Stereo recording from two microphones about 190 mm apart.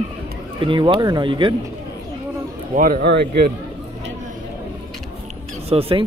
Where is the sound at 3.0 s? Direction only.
60° right (ahead or behind).